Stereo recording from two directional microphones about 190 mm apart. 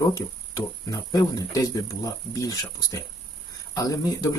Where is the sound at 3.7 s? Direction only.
20° left (ahead or behind).